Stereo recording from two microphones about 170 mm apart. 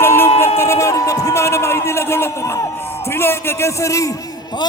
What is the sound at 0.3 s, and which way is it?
Music, 15° left (ahead or behind).